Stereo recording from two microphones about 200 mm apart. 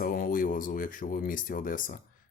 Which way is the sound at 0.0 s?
45° left (ahead or behind).